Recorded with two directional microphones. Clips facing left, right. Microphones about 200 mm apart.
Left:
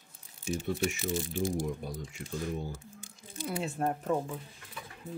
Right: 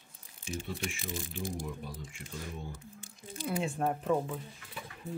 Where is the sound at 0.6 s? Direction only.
45° left (ahead or behind).